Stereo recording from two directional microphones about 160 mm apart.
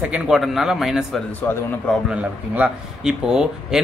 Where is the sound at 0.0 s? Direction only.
5° right (ahead or behind).